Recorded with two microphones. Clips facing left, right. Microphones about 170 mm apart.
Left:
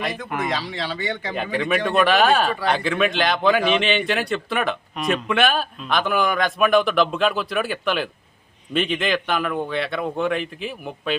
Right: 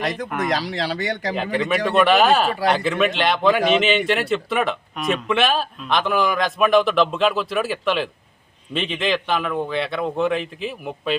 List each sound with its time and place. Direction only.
0.3 s speech: centre (ahead or behind)
0.7 s speech: 40° right (ahead or behind)
1.4 s speech: centre (ahead or behind)